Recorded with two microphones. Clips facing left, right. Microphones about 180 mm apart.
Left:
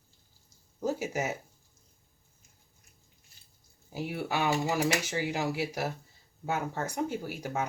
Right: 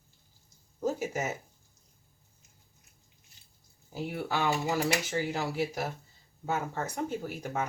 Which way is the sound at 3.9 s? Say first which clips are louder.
Even; 5° left (ahead or behind).